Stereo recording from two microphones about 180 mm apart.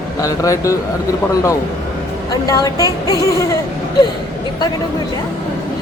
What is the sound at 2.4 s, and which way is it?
Speech, 20° left (ahead or behind).